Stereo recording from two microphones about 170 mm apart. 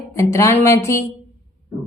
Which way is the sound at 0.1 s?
15° left (ahead or behind).